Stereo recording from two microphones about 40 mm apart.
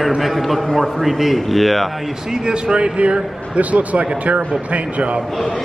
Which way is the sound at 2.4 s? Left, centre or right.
Right.